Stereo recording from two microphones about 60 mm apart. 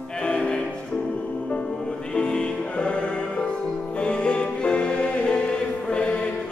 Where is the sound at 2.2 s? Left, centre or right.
Centre.